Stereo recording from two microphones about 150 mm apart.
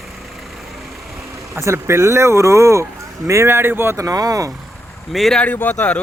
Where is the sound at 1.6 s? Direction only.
20° right (ahead or behind).